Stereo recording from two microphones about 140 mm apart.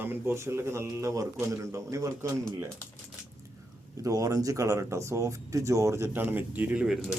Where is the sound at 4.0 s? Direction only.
25° right (ahead or behind).